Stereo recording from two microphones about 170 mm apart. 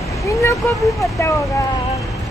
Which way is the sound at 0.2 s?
20° left (ahead or behind).